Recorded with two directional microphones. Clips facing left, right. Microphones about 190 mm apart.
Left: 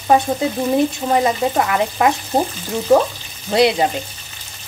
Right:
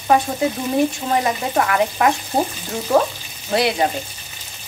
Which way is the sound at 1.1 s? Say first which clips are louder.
Left 5 dB; 25° left (ahead or behind).